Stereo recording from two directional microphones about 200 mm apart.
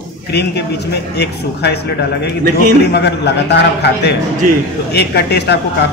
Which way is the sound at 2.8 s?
55° left (ahead or behind).